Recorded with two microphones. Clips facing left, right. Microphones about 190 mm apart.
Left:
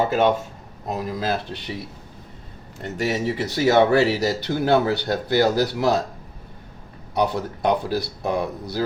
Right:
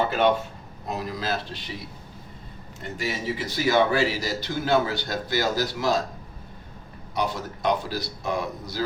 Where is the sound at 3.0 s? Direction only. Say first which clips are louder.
Left 6 dB; 70° left (ahead or behind).